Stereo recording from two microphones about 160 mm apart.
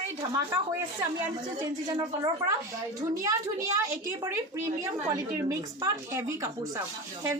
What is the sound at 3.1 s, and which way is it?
A woman's voice, 20° right (ahead or behind).